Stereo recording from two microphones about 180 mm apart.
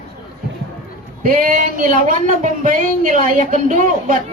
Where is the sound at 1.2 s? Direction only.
50° right (ahead or behind).